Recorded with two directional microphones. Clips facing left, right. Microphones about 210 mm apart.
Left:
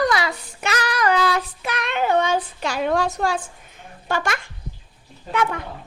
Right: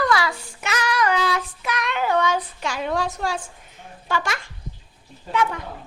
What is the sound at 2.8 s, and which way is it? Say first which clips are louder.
A woman's voice: left 4 dB; 55° left (ahead or behind).